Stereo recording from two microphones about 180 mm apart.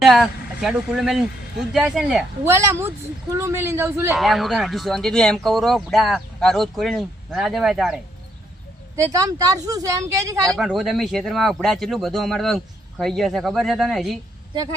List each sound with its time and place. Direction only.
0.0 s speech: centre (ahead or behind)
2.4 s speech: 15° right (ahead or behind)
4.1 s speech: centre (ahead or behind)
9.0 s speech: 15° right (ahead or behind)
10.6 s speech: centre (ahead or behind)